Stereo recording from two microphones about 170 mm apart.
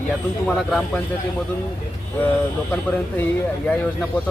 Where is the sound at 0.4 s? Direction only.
5° left (ahead or behind).